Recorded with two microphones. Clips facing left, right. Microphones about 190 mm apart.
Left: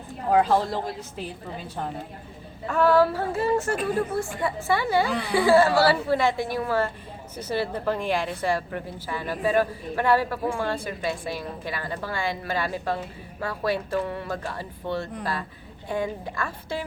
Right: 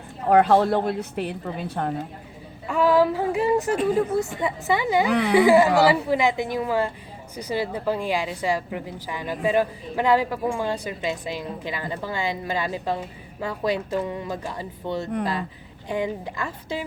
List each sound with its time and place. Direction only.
0.3 s a woman's voice: 65° right (ahead or behind)
2.6 s a woman's voice: 10° right (ahead or behind)